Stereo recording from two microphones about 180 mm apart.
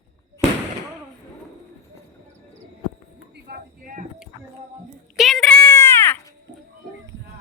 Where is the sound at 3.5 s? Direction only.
50° right (ahead or behind).